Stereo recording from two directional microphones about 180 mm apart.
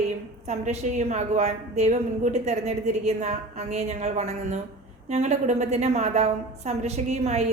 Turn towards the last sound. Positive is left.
turn(degrees=-40)  # may be behind; listen again after turning